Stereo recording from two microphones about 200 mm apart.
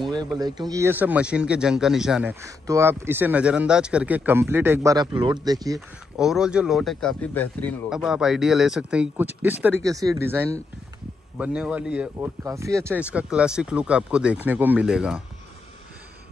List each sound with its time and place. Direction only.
0.0 s a sound: 20° right (ahead or behind)
0.4 s speech: 20° right (ahead or behind); by 2.3 s 5° right (ahead or behind)
2.4 s speech: 15° right (ahead or behind)
6.1 s speech: 5° right (ahead or behind)